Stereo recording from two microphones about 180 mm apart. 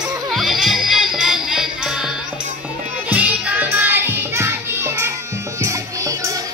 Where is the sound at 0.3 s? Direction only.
Centre (ahead or behind).